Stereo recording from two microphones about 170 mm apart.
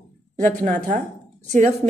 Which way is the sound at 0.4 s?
50° right (ahead or behind).